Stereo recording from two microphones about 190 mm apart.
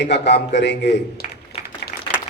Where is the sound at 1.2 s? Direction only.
35° left (ahead or behind).